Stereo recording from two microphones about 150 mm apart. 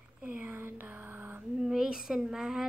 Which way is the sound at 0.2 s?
10° right (ahead or behind).